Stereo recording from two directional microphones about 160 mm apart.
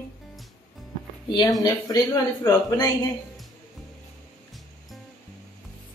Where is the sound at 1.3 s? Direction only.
25° left (ahead or behind).